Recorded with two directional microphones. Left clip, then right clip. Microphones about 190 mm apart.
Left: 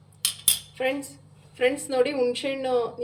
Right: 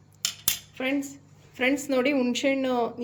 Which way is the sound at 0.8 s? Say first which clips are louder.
Right 1 dB; 35° right (ahead or behind).